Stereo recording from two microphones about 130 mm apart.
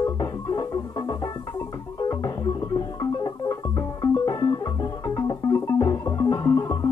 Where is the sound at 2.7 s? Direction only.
30° left (ahead or behind).